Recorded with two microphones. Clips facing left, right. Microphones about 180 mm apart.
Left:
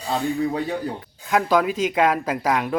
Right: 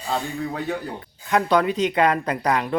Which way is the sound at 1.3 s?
Centre (ahead or behind).